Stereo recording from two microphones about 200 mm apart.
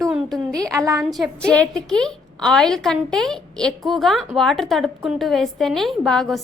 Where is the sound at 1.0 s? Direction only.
Centre (ahead or behind).